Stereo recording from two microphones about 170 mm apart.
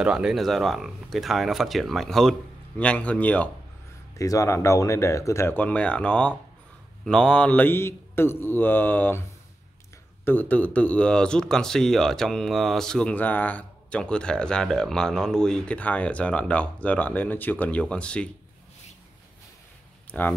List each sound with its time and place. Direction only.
0.0 s speech: 5° right (ahead or behind)
4.2 s speech: 20° left (ahead or behind)
10.2 s speech: 10° left (ahead or behind)
20.1 s speech: 10° left (ahead or behind)